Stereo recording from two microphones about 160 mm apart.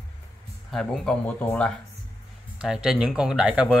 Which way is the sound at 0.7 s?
5° left (ahead or behind).